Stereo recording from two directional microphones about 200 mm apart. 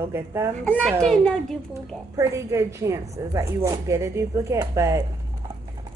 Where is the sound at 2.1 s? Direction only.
15° right (ahead or behind).